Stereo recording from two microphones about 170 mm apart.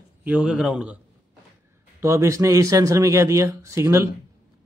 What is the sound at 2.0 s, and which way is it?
A man's voice, 15° right (ahead or behind).